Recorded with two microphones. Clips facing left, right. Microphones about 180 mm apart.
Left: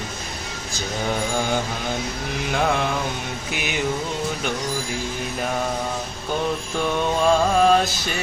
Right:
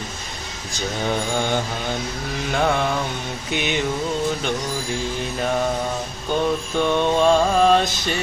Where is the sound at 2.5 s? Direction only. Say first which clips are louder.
Right 2 dB; 5° left (ahead or behind).